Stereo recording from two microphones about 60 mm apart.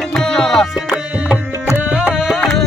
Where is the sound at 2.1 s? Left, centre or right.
Centre.